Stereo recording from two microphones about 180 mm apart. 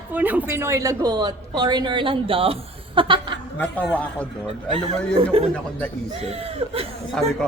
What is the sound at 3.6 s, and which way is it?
Speech, 5° left (ahead or behind).